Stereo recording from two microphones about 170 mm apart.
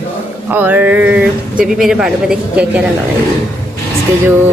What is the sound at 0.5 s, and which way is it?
A woman's voice, 10° right (ahead or behind).